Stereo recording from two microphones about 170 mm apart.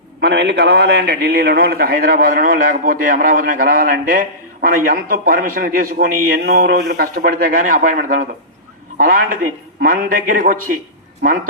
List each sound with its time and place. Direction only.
0.2 s a man's voice: 80° right; by 10.8 s 50° right (ahead or behind)